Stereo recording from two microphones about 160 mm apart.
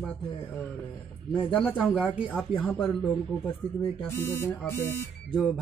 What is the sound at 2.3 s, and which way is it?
Speech, 10° left (ahead or behind).